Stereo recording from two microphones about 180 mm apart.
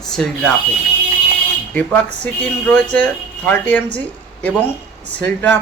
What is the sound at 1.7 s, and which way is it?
A woman's voice, 10° left (ahead or behind).